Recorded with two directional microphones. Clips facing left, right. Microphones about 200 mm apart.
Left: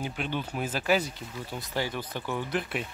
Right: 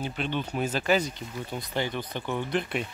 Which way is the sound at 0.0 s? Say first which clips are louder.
Right 2 dB; 10° left (ahead or behind).